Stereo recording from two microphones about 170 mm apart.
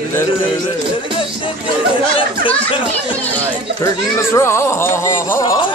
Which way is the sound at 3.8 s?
15° left (ahead or behind).